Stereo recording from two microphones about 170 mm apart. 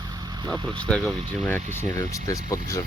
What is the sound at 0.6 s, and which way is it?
Speech, 5° left (ahead or behind).